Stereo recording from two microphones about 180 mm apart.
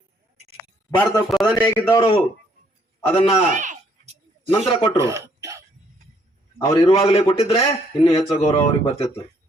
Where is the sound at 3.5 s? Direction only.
45° right (ahead or behind).